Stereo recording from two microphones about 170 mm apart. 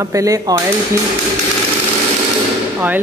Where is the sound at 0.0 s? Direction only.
20° right (ahead or behind).